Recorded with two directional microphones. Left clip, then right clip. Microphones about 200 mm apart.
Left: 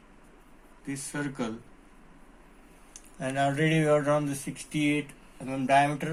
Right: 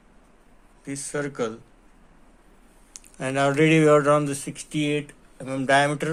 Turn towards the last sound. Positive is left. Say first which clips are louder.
# right 3 dB
turn(degrees=-50)  # may be behind; listen again after turning